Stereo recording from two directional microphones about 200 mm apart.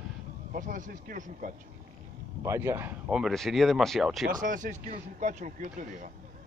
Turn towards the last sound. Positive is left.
turn(degrees=-40)  # may be behind; listen again after turning